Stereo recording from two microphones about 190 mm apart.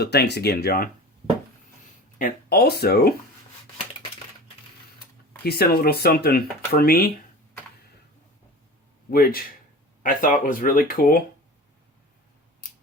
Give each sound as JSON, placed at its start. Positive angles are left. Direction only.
{"t": 0.0, "sound": "speech", "side_deg": 60}
{"t": 2.1, "sound": "speech", "side_deg": 50}
{"t": 5.4, "sound": "speech", "side_deg": 55}
{"t": 9.0, "sound": "speech", "side_deg": 50}